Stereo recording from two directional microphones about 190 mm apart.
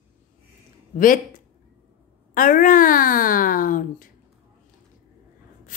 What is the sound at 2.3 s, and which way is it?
A woman's voice, 45° left (ahead or behind).